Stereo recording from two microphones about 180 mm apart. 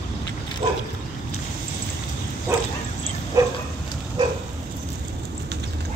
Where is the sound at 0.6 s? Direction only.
25° right (ahead or behind).